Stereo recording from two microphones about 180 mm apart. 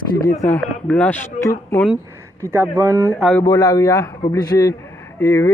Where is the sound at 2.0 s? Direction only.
15° right (ahead or behind).